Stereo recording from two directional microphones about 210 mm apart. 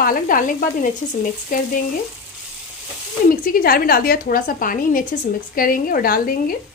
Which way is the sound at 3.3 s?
40° left (ahead or behind).